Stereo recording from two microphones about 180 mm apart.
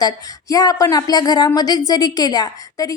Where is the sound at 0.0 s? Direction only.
20° left (ahead or behind).